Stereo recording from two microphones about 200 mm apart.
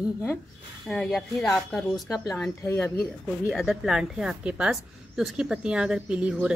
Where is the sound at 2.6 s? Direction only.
15° left (ahead or behind).